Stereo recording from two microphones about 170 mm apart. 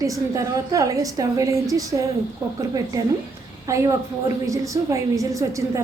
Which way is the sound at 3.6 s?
20° right (ahead or behind).